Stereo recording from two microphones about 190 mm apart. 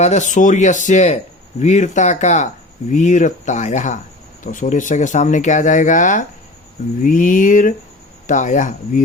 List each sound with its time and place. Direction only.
0.0 s speech: 40° left (ahead or behind)